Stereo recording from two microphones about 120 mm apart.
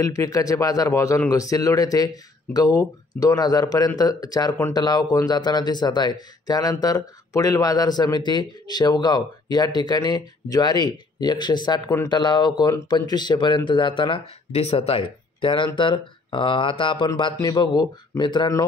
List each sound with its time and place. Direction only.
0.0 s speech: 30° left (ahead or behind)